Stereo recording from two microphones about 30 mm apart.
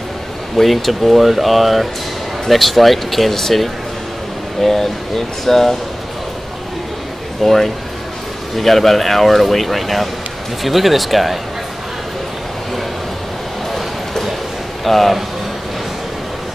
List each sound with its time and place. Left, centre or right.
0.6 s speech: centre
7.4 s speech: centre
13.7 s a sound: centre
14.9 s speech: centre